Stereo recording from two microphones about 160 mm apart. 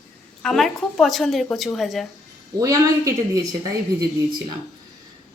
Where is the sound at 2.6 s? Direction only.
20° right (ahead or behind).